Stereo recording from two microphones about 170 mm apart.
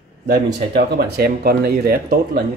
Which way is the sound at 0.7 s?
70° right (ahead or behind).